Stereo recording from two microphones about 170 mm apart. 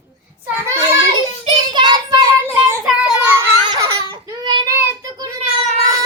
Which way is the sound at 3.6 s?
20° right (ahead or behind).